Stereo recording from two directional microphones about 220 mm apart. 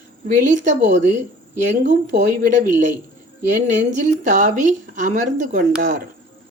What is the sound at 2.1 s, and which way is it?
Speech, 40° right (ahead or behind).